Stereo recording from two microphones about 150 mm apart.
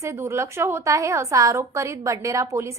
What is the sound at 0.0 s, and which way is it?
A woman's voice, 20° right (ahead or behind).